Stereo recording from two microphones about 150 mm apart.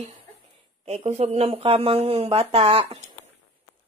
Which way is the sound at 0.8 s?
45° right (ahead or behind).